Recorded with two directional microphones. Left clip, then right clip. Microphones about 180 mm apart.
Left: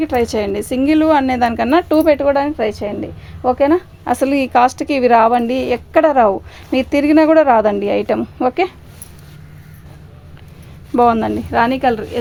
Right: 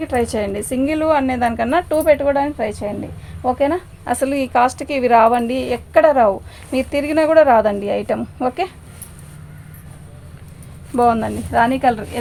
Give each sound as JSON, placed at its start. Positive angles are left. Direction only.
{"t": 0.0, "sound": "a woman's voice", "side_deg": 40}
{"t": 10.9, "sound": "a woman's voice", "side_deg": 45}